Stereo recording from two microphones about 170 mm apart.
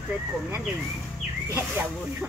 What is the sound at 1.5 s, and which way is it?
Speech, 15° right (ahead or behind).